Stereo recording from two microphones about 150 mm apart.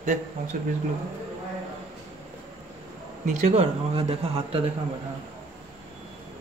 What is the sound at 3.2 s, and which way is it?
Speech, 45° right (ahead or behind).